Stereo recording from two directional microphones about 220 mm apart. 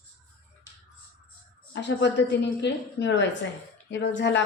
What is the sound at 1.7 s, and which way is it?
Speech, 50° left (ahead or behind).